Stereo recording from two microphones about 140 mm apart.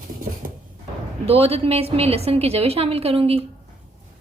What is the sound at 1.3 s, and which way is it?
A woman's voice, 45° right (ahead or behind).